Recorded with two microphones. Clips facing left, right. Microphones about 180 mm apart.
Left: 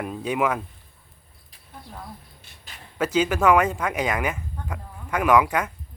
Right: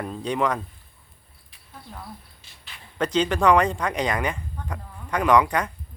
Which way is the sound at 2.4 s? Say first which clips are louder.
Left 1 dB; 45° left (ahead or behind).